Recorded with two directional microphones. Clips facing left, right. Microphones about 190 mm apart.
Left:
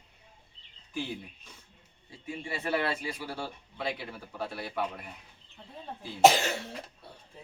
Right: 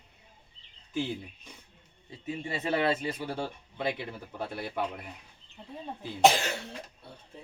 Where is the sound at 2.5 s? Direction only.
20° right (ahead or behind).